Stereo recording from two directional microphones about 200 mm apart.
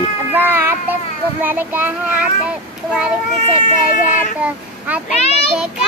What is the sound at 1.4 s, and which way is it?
Speech, 10° right (ahead or behind).